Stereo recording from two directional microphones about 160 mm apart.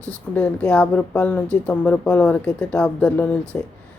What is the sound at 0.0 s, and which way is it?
Speech, 5° left (ahead or behind).